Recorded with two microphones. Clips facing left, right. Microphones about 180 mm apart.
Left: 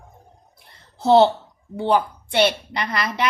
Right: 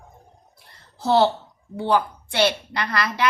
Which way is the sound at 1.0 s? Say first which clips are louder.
Left 4 dB; 25° left (ahead or behind).